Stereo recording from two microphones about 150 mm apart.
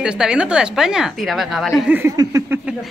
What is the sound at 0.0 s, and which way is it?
A woman's voice, 5° right (ahead or behind).